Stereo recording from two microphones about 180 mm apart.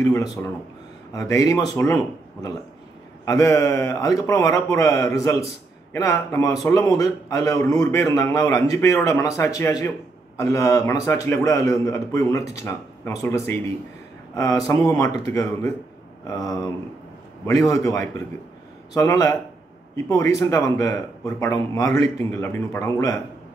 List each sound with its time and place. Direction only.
0.0 s a man's voice: 20° left (ahead or behind)
3.3 s a man's voice: 15° left (ahead or behind)
16.3 s a man's voice: 20° left (ahead or behind)